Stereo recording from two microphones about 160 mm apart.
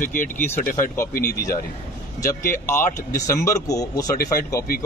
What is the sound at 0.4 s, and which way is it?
Speech, 15° left (ahead or behind).